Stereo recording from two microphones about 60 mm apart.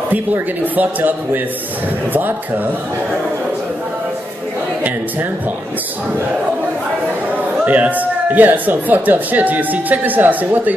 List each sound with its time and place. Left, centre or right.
0.1 s a man's voice: right
7.6 s speech: right